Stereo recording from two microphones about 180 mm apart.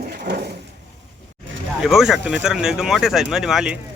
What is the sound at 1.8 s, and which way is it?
Speech, centre (ahead or behind).